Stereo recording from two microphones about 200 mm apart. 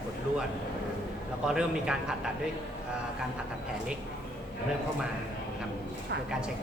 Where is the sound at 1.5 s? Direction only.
5° right (ahead or behind).